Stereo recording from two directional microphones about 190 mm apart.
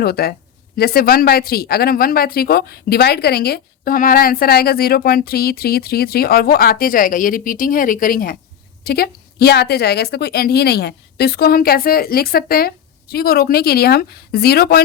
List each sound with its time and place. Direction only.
0.0 s a woman's voice: 55° left (ahead or behind)